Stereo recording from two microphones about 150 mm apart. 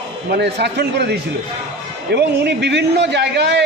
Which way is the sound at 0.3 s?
90° right.